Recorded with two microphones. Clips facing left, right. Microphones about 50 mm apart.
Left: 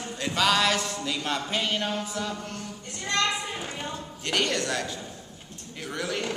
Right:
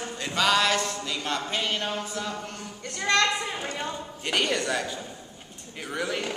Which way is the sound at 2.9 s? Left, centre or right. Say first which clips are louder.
Right 5 dB; right.